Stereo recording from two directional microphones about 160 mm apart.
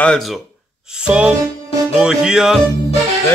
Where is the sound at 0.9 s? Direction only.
5° right (ahead or behind).